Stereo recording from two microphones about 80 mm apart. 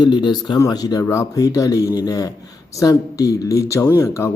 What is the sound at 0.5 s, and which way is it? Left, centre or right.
Speech, left.